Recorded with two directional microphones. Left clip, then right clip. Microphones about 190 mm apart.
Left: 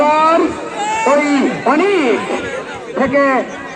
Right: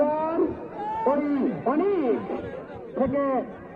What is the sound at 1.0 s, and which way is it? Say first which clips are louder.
Speech: left 11 dB; 5° right (ahead or behind).